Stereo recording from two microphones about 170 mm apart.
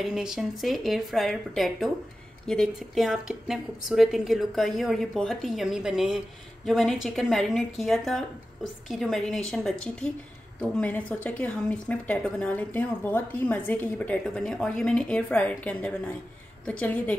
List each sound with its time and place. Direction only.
0.0 s a woman's voice: 5° right (ahead or behind)